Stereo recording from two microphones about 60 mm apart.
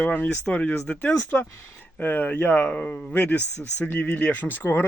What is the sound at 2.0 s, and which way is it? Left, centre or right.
Speech, left.